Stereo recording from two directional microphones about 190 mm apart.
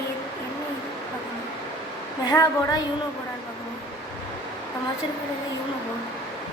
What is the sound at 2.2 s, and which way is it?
Speech, 20° left (ahead or behind).